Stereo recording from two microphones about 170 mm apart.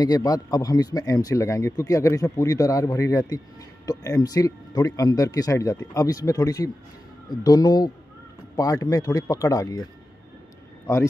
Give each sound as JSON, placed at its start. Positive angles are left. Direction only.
{"t": 0.0, "sound": "a man's voice", "side_deg": 20}